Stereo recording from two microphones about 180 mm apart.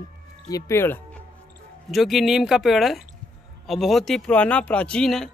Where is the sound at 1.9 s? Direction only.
Centre (ahead or behind).